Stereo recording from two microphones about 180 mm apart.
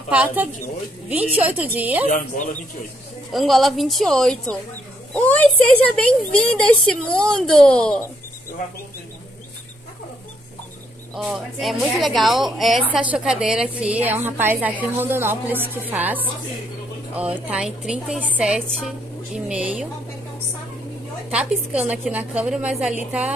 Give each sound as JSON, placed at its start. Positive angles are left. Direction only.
{"t": 0.1, "sound": "a woman's voice", "side_deg": -10}
{"t": 2.0, "sound": "speech", "side_deg": 45}
{"t": 3.3, "sound": "speech", "side_deg": 0}
{"t": 11.1, "sound": "a woman's voice", "side_deg": 0}
{"t": 21.3, "sound": "speech", "side_deg": -5}